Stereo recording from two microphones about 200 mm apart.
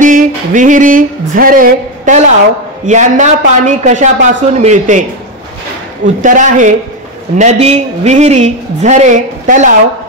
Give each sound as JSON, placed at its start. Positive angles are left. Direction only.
{"t": 0.0, "sound": "a sound", "side_deg": -40}
{"t": 2.9, "sound": "a woman's voice", "side_deg": -40}
{"t": 6.2, "sound": "a woman's voice", "side_deg": -40}